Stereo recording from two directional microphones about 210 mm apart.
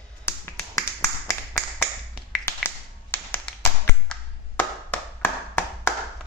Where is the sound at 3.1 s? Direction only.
10° left (ahead or behind).